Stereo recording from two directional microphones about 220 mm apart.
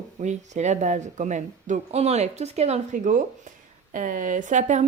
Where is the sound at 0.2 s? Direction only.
30° right (ahead or behind).